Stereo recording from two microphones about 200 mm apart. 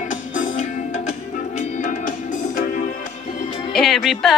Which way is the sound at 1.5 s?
40° left (ahead or behind).